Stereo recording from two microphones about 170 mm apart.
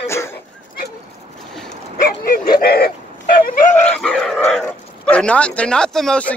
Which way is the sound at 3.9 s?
5° left (ahead or behind).